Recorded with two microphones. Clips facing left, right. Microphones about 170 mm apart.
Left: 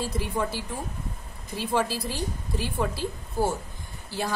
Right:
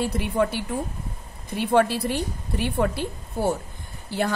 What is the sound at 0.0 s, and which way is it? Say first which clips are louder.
Speech: right 5 dB; 60° right (ahead or behind).